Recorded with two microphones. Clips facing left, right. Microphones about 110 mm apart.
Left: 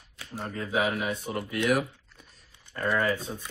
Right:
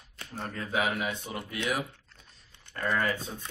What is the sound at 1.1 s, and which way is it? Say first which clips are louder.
Speech: left 4 dB; 50° left (ahead or behind).